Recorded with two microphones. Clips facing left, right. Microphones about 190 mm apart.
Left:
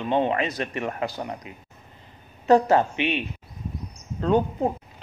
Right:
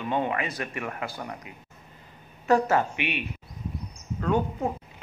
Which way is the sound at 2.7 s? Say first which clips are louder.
Left 4 dB; 25° left (ahead or behind).